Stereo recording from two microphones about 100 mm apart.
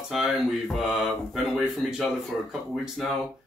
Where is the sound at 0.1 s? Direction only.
5° right (ahead or behind).